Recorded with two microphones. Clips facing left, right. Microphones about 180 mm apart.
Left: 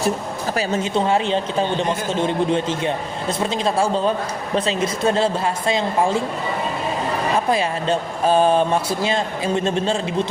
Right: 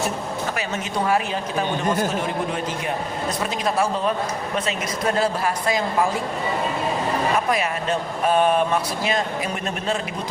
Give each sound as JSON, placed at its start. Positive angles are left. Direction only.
{"t": 0.5, "sound": "speech", "side_deg": 30}
{"t": 7.3, "sound": "speech", "side_deg": 30}